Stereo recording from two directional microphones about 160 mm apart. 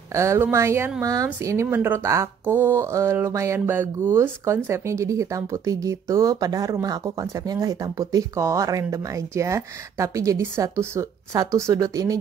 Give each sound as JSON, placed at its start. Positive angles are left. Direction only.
{"t": 0.1, "sound": "speech", "side_deg": -20}